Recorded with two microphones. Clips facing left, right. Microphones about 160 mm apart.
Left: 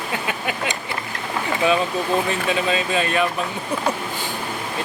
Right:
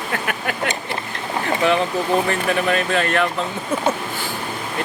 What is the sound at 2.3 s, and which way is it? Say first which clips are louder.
Speech: right 2 dB; 20° left (ahead or behind).